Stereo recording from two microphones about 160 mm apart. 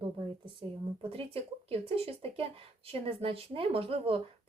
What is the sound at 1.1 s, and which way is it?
Speech, 35° right (ahead or behind).